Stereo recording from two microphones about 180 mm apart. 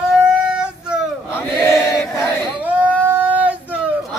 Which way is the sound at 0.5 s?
5° right (ahead or behind).